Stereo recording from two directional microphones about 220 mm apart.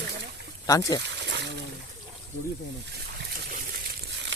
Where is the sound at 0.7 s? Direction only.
15° left (ahead or behind).